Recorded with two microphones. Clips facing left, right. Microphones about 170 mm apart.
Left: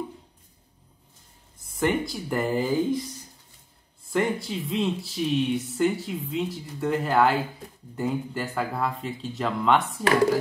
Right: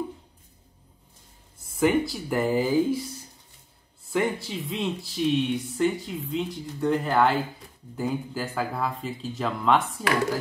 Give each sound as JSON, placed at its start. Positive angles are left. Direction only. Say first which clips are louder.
{"t": 1.8, "sound": "speech", "louder": "right 3 dB", "side_deg": 0}
{"t": 4.1, "sound": "speech", "louder": "left 1 dB", "side_deg": 0}